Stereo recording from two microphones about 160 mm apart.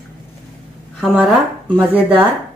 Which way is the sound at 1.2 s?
Centre (ahead or behind).